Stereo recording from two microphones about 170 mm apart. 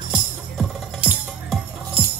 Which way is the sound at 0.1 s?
5° right (ahead or behind).